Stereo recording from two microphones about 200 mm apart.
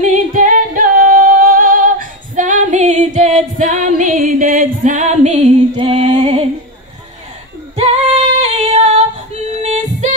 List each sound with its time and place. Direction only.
0.0 s a capella: 40° right (ahead or behind)
7.7 s female singing: 35° right (ahead or behind)
9.6 s music: 35° right (ahead or behind)